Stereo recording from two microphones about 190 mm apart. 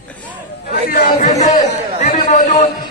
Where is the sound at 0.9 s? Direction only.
45° left (ahead or behind).